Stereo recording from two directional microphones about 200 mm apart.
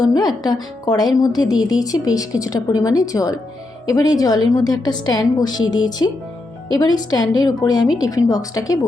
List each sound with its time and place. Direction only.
0.0 s a woman's voice: 20° left (ahead or behind)